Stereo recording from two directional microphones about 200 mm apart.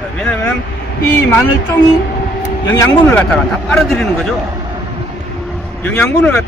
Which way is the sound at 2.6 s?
20° left (ahead or behind).